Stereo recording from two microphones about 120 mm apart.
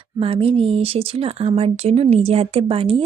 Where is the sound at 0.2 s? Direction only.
50° right (ahead or behind).